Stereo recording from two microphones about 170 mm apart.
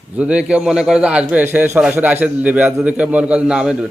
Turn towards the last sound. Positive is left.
turn(degrees=-5)  # may be behind; listen again after turning